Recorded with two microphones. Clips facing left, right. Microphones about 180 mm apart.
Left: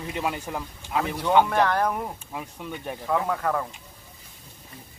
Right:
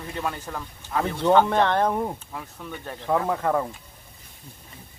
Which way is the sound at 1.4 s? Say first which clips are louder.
Right 2 dB; 25° right (ahead or behind).